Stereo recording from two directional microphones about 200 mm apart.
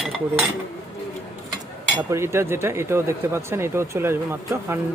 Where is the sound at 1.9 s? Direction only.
15° right (ahead or behind).